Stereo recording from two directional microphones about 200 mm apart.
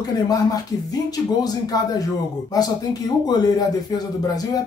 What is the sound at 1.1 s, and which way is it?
Speech, 20° left (ahead or behind).